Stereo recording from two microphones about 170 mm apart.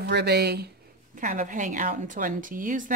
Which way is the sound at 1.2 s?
50° right (ahead or behind).